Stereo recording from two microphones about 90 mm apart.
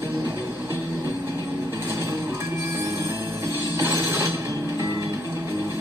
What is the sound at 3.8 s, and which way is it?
Mechanisms, 35° right (ahead or behind).